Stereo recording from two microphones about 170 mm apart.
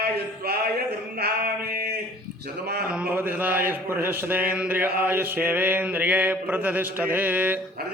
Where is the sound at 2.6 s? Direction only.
65° right (ahead or behind).